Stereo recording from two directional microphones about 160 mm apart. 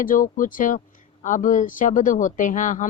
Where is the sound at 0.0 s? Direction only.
55° left (ahead or behind).